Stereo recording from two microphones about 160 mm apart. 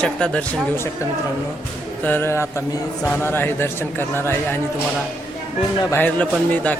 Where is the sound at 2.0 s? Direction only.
15° left (ahead or behind).